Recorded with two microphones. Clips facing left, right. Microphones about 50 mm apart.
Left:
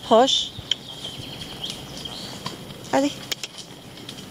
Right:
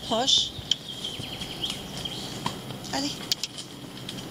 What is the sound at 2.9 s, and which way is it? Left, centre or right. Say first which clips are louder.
Bee: left 10 dB; left.